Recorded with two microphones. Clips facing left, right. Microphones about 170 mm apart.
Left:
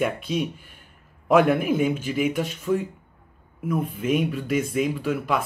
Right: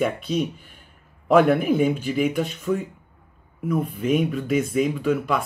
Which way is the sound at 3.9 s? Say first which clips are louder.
Right 2 dB; centre (ahead or behind).